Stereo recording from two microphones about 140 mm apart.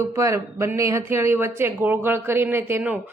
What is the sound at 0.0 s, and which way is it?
Speech, 20° right (ahead or behind).